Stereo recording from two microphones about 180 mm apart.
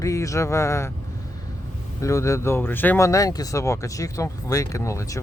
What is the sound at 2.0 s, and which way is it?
Speech, 15° left (ahead or behind).